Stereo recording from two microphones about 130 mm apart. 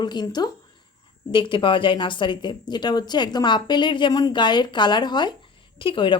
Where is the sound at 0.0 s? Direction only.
35° left (ahead or behind).